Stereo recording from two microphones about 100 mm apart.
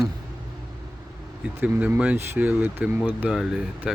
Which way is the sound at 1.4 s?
15° right (ahead or behind).